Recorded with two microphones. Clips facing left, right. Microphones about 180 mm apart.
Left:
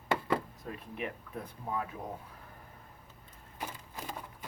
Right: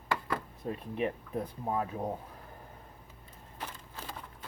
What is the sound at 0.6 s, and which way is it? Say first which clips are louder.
Speech: right 6 dB; 30° right (ahead or behind).